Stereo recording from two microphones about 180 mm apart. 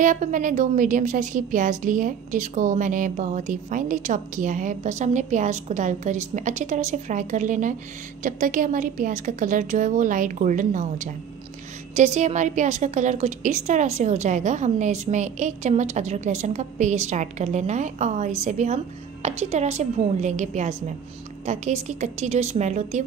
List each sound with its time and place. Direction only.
0.0 s a woman's voice: 45° right (ahead or behind)